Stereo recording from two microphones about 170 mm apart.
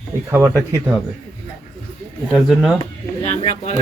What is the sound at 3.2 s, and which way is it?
Speech, 40° left (ahead or behind).